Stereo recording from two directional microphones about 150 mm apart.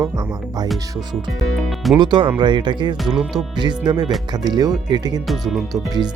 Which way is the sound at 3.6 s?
30° right (ahead or behind).